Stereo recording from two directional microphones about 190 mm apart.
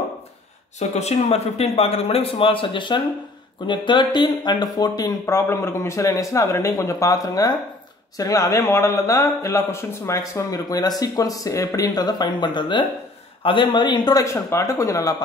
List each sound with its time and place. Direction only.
0.7 s speech: 35° left (ahead or behind); by 15.2 s 20° left (ahead or behind)